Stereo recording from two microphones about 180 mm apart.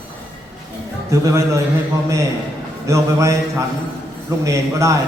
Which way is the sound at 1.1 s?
20° right (ahead or behind).